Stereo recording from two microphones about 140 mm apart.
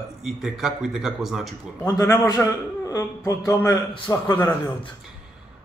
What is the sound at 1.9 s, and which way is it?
A man's voice, 20° left (ahead or behind).